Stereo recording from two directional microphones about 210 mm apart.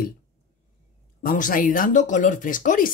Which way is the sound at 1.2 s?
40° left (ahead or behind).